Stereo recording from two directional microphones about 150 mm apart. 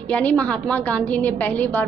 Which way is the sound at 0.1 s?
10° left (ahead or behind).